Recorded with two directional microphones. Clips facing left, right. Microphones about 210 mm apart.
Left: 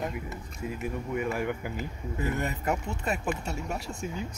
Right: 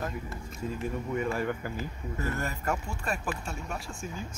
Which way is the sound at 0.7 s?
10° left (ahead or behind).